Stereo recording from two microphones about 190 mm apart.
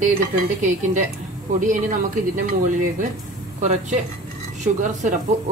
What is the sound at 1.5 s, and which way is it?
Speech, 40° right (ahead or behind).